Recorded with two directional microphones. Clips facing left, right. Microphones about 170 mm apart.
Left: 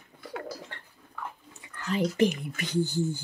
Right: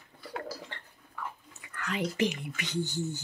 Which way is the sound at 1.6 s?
25° left (ahead or behind).